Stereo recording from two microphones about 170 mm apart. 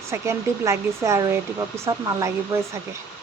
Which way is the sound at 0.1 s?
15° right (ahead or behind).